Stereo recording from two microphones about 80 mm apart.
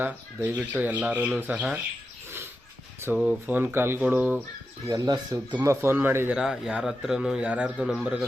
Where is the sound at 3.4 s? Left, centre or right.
Right.